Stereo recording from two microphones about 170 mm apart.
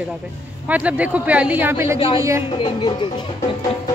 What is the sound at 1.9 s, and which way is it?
Speech, 30° left (ahead or behind).